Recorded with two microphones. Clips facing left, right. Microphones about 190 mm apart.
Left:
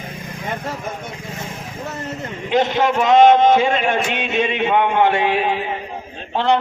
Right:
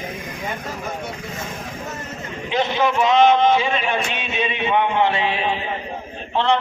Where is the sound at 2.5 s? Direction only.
50° left (ahead or behind).